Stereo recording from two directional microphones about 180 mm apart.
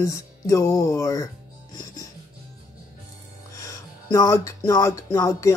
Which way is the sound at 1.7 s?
20° left (ahead or behind).